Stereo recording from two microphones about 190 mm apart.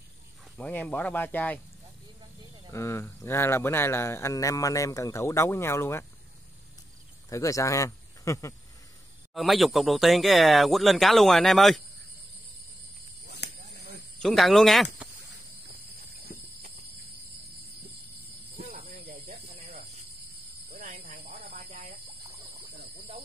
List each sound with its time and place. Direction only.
0.6 s speech: 10° left (ahead or behind)
2.7 s speech: 15° left (ahead or behind)
7.2 s speech: 15° left (ahead or behind)
9.3 s speech: centre (ahead or behind)
13.3 s a sound: 60° left (ahead or behind)
14.2 s speech: centre (ahead or behind)
18.6 s snake: 35° right (ahead or behind)
18.9 s snake: 50° right (ahead or behind)
20.8 s snake: 45° right (ahead or behind)
22.8 s snake: 30° right (ahead or behind)